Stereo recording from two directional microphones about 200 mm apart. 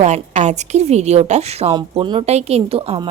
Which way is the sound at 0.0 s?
35° right (ahead or behind).